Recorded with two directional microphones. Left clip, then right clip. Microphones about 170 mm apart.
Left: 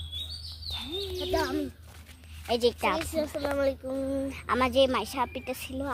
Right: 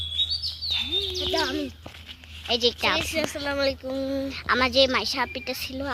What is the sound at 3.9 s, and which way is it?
Speech, 5° right (ahead or behind).